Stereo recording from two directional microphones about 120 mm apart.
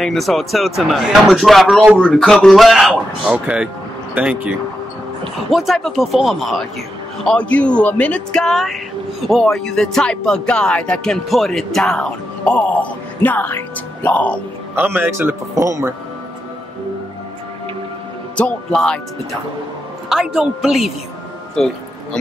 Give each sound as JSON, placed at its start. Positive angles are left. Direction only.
{"t": 0.0, "sound": "speech", "side_deg": 0}
{"t": 5.5, "sound": "speech", "side_deg": 0}
{"t": 7.2, "sound": "speech", "side_deg": 10}
{"t": 14.8, "sound": "a man's voice", "side_deg": -20}
{"t": 18.3, "sound": "speech", "side_deg": 10}
{"t": 20.1, "sound": "speech", "side_deg": 0}